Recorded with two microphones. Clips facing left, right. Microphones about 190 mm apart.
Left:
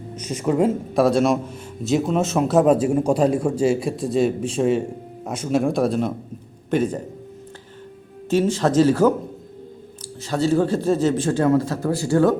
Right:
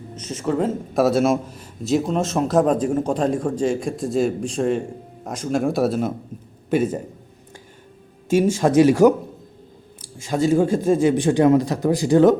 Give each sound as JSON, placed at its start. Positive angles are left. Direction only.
{"t": 0.2, "sound": "speech", "side_deg": 10}
{"t": 0.9, "sound": "a man's voice", "side_deg": -5}
{"t": 8.3, "sound": "speech", "side_deg": -10}
{"t": 10.2, "sound": "speech", "side_deg": -10}